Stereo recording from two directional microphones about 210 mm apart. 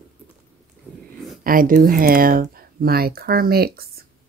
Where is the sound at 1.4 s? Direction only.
40° right (ahead or behind).